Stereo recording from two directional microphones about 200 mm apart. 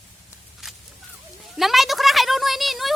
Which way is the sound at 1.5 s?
Centre (ahead or behind).